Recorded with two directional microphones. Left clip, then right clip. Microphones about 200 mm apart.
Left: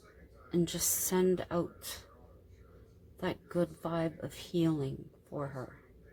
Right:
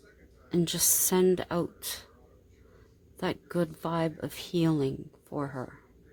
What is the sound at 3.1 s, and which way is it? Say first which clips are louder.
A woman's voice: right 3 dB; 50° right (ahead or behind).